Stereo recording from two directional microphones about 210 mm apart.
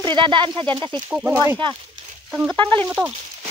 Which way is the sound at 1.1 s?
10° right (ahead or behind).